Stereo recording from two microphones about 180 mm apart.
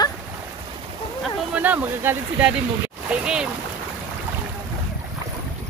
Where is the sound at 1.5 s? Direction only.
10° right (ahead or behind).